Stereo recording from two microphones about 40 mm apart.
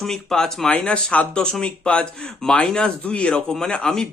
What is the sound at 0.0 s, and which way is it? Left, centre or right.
Speech, centre.